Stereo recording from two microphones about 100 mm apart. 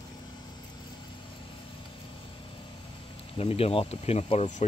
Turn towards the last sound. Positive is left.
turn(degrees=85)